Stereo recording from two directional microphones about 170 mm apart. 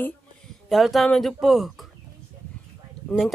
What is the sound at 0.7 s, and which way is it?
Speech, centre (ahead or behind).